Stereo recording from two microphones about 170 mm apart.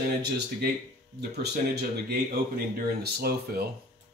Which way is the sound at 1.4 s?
65° right (ahead or behind).